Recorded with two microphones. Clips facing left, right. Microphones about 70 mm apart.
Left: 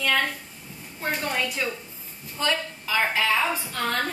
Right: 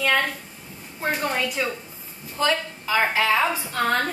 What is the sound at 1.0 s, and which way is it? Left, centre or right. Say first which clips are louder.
A woman's voice: right 3 dB; centre.